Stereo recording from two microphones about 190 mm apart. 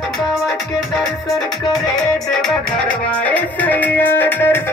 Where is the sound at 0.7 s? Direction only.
Centre (ahead or behind).